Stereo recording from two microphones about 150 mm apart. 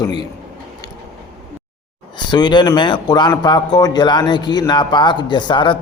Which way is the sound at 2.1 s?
30° left (ahead or behind).